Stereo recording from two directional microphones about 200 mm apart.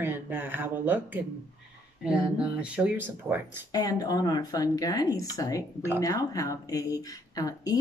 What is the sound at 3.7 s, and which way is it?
Speech, 20° left (ahead or behind).